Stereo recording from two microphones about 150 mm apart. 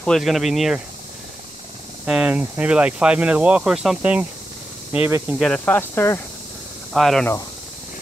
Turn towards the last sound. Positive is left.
turn(degrees=0)  # may be behind; listen again after turning